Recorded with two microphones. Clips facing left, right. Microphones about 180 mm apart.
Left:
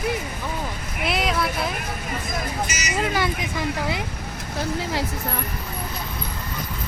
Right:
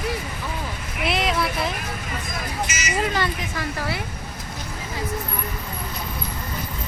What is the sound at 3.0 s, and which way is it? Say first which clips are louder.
Speech: left 1 dB; 5° left (ahead or behind).